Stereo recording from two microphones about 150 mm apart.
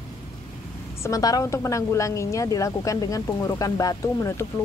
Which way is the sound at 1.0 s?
25° left (ahead or behind).